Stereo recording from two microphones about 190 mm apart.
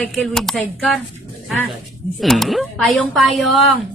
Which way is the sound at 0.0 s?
Centre (ahead or behind).